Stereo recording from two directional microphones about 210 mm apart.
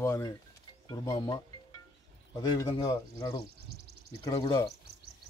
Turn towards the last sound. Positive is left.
turn(degrees=20)  # may be behind; listen again after turning